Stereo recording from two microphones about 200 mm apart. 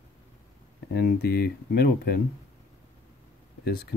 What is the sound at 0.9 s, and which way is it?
Speech, 50° left (ahead or behind).